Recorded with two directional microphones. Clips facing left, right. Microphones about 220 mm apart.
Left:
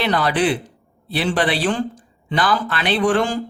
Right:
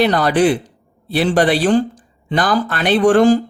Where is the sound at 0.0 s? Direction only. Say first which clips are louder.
Right 5 dB; 45° right (ahead or behind).